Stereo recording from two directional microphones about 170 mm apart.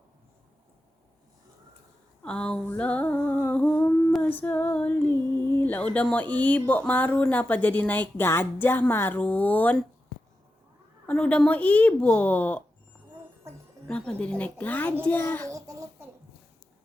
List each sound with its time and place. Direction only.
2.2 s humming: 5° left (ahead or behind)
11.0 s humming: 5° left (ahead or behind)
13.8 s humming: 5° left (ahead or behind)
15.4 s babbling: 20° right (ahead or behind)